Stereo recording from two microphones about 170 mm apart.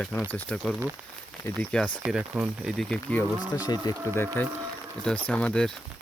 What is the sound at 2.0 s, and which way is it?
Speech, 5° right (ahead or behind).